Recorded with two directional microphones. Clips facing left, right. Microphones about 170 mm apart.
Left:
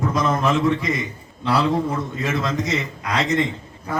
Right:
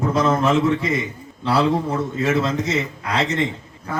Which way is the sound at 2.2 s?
25° right (ahead or behind).